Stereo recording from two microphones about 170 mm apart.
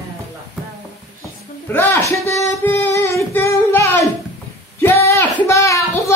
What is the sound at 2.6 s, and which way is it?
Music, 15° left (ahead or behind).